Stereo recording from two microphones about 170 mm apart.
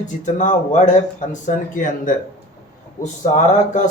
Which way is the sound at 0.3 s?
45° left (ahead or behind).